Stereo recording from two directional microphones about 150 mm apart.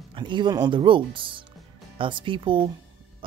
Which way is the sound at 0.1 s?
30° right (ahead or behind).